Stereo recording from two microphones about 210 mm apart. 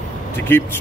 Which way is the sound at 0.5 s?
10° left (ahead or behind).